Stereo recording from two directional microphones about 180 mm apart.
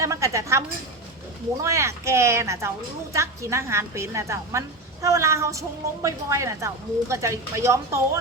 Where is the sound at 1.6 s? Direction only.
15° right (ahead or behind).